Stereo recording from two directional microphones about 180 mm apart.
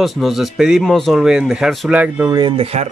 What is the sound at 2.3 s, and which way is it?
Speech, 30° right (ahead or behind).